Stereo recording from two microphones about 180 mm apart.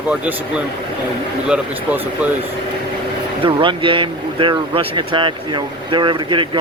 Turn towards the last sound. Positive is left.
turn(degrees=-25)  # may be behind; listen again after turning